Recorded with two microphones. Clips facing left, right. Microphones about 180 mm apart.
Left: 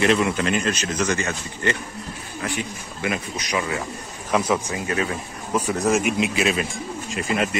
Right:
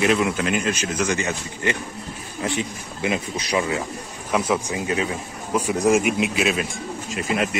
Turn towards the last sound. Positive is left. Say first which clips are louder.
# even
turn(degrees=-5)  # may be behind; listen again after turning